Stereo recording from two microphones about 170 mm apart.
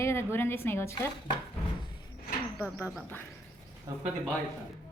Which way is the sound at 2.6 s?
15° left (ahead or behind).